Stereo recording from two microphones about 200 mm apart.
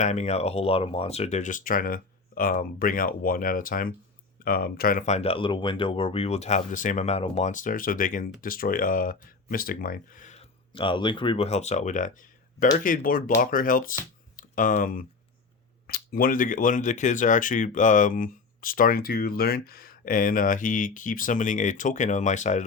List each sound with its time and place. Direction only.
0.0 s speech: 35° left (ahead or behind)
10.7 s speech: 25° left (ahead or behind)